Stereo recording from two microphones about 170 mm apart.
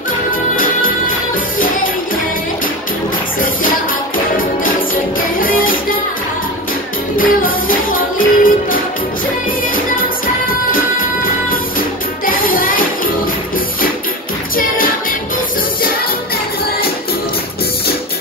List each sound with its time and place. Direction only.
0.6 s music: 55° left (ahead or behind)
5.4 s music: 55° left (ahead or behind)
7.2 s music: 55° left (ahead or behind)
10.2 s music: 55° left (ahead or behind)
12.3 s music: 55° left (ahead or behind)